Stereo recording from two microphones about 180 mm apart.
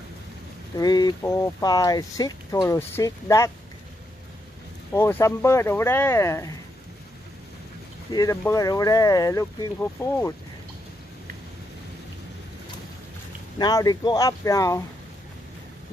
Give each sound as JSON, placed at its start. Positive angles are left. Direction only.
{"t": 0.7, "sound": "speech", "side_deg": 20}
{"t": 4.9, "sound": "speech", "side_deg": 15}
{"t": 8.1, "sound": "speech", "side_deg": 20}
{"t": 13.6, "sound": "speech", "side_deg": 20}